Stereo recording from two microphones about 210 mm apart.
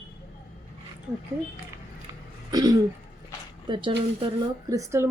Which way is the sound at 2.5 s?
20° right (ahead or behind).